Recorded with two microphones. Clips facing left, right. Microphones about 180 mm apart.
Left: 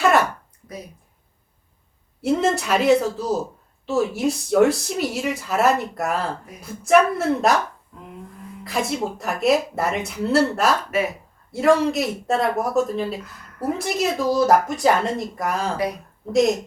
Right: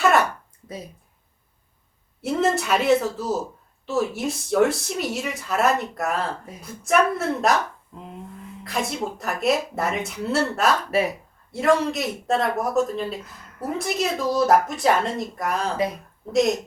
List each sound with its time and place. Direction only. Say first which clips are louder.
2.2 s speech: left 2 dB; centre (ahead or behind)
7.9 s a sound: right 2 dB; 25° right (ahead or behind)
8.6 s speech: left 3 dB; centre (ahead or behind)